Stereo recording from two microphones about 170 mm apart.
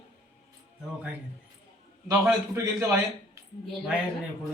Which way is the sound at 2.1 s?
10° right (ahead or behind).